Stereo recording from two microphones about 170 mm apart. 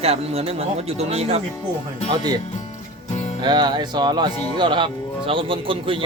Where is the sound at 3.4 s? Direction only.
25° right (ahead or behind).